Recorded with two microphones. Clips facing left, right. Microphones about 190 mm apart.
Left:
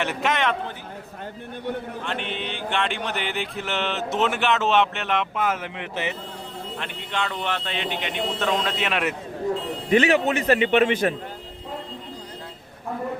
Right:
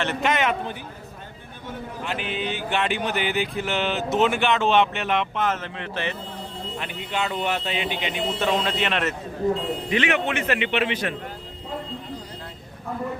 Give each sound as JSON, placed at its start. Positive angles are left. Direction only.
{"t": 0.0, "sound": "speech", "side_deg": 5}
{"t": 2.0, "sound": "speech", "side_deg": -5}
{"t": 6.7, "sound": "speech", "side_deg": -5}
{"t": 9.9, "sound": "a man's voice", "side_deg": 40}